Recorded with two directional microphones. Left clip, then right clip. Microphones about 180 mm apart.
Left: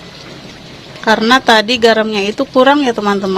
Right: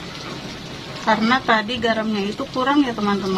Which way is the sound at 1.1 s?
50° left (ahead or behind).